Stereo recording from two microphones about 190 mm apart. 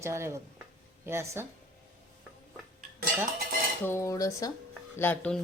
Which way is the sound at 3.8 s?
15° left (ahead or behind).